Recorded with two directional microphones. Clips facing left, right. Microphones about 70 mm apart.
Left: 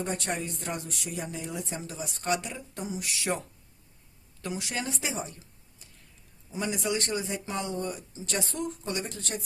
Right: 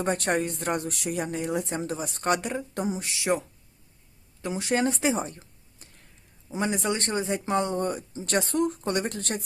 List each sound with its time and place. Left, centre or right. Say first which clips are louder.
0.0 s speech: right 6 dB; right
3.0 s speech: right 2 dB; right
4.7 s speech: right 12 dB; right
5.8 s a sound: right 4 dB; right
6.5 s speech: right 3 dB; right